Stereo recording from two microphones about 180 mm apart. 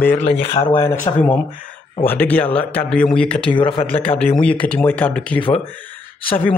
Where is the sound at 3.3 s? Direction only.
30° left (ahead or behind).